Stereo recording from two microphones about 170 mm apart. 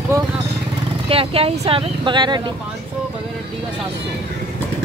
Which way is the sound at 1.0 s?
35° right (ahead or behind).